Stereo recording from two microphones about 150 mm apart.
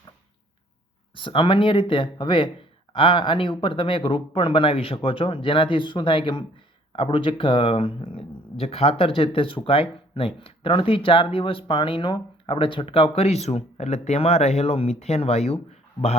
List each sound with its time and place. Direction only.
1.1 s speech: 35° left (ahead or behind)